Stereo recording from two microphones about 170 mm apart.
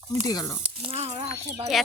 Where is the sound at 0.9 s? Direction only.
35° right (ahead or behind).